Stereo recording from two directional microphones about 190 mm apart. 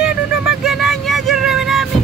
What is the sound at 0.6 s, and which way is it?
Vehicle, centre (ahead or behind).